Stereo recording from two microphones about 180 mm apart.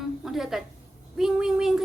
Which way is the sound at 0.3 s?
Centre (ahead or behind).